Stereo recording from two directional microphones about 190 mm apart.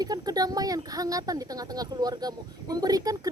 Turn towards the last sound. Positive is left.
turn(degrees=-20)  # may be behind; listen again after turning